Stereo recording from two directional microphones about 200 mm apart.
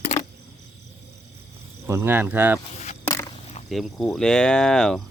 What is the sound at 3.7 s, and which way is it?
Speech, 5° left (ahead or behind).